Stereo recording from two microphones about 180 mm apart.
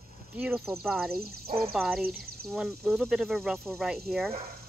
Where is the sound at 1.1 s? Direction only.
60° right (ahead or behind).